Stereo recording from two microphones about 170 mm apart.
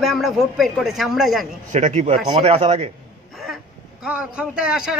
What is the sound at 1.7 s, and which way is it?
A man's voice, 45° right (ahead or behind).